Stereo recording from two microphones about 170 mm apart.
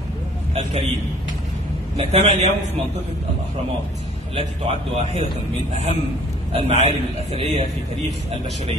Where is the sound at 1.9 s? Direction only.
40° right (ahead or behind).